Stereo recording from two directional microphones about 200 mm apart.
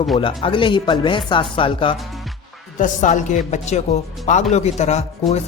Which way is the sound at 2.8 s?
40° left (ahead or behind).